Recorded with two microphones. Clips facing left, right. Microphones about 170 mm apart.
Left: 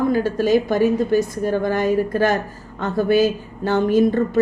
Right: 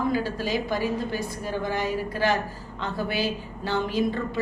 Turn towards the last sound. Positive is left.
turn(degrees=50)  # may be behind; listen again after turning